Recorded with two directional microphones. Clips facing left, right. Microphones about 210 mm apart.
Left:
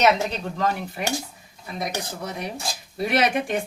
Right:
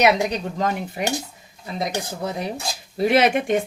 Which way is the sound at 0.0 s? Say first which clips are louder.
Right 2 dB; 15° right (ahead or behind).